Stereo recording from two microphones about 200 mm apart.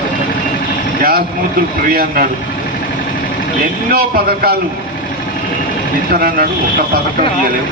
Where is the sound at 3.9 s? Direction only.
50° right (ahead or behind).